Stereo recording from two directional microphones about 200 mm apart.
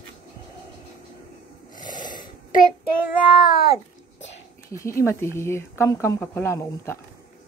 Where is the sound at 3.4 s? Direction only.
50° left (ahead or behind).